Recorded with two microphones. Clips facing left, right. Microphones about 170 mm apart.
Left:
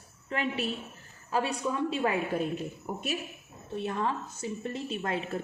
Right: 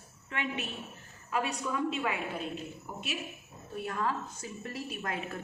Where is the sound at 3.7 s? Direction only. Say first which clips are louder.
Left 2 dB; 25° left (ahead or behind).